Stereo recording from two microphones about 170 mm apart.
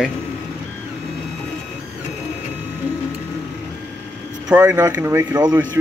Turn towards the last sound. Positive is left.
turn(degrees=-10)  # may be behind; listen again after turning